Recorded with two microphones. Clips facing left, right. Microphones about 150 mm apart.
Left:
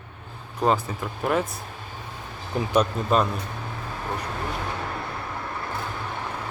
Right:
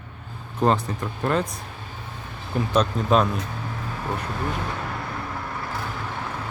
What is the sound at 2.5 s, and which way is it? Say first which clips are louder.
Speech: right 1 dB; 20° left (ahead or behind).